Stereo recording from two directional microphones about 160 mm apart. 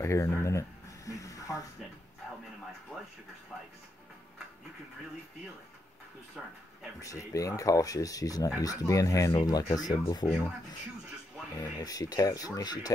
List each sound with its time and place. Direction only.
0.0 s a sound: 15° left (ahead or behind)
7.0 s speech: 20° left (ahead or behind)
11.5 s speech: 25° left (ahead or behind)